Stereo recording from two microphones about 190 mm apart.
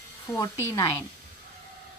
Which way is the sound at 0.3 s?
15° left (ahead or behind).